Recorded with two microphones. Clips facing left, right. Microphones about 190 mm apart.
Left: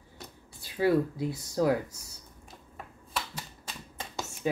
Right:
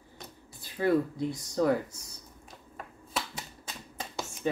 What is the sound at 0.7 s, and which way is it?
Speech, 5° left (ahead or behind).